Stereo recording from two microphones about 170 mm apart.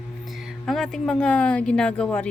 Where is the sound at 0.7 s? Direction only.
Centre (ahead or behind).